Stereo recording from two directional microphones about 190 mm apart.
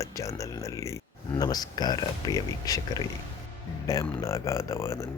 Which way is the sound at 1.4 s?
20° left (ahead or behind).